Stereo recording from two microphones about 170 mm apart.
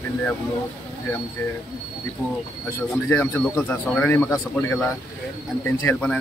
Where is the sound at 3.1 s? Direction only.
10° left (ahead or behind).